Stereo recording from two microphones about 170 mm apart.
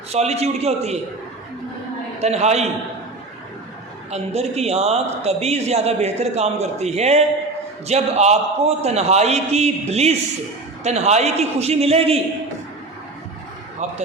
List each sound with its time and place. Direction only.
0.1 s a man's voice: 40° right (ahead or behind)
2.2 s a man's voice: 40° right (ahead or behind)
4.1 s a man's voice: 40° right (ahead or behind)